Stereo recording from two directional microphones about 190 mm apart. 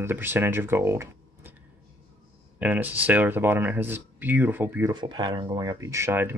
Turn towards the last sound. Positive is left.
turn(degrees=-10)  # may be behind; listen again after turning